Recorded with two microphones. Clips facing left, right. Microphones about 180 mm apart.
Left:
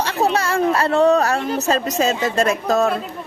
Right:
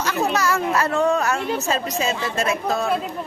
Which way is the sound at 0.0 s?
30° left (ahead or behind).